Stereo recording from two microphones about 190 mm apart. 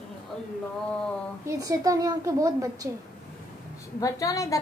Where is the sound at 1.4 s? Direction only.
15° right (ahead or behind).